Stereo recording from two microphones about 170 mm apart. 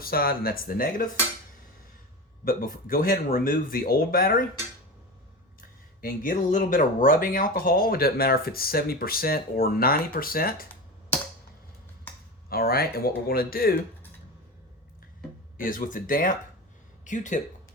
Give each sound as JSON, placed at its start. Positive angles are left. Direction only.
{"t": 0.0, "sound": "speech", "side_deg": 60}
{"t": 2.4, "sound": "speech", "side_deg": 55}
{"t": 5.5, "sound": "speech", "side_deg": 55}
{"t": 12.5, "sound": "speech", "side_deg": 60}
{"t": 15.5, "sound": "speech", "side_deg": 55}